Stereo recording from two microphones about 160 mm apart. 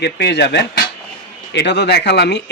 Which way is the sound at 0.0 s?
90° left.